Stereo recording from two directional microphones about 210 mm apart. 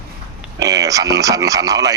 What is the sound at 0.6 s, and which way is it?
Speech, 15° right (ahead or behind).